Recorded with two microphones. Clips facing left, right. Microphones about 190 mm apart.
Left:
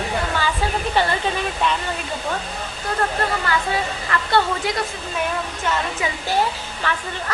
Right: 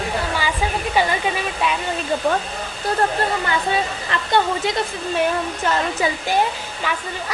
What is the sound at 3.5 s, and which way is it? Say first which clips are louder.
Speech: right 1 dB; 20° right (ahead or behind).